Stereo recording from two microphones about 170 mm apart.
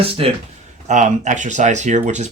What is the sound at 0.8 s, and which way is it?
Speech, 45° right (ahead or behind).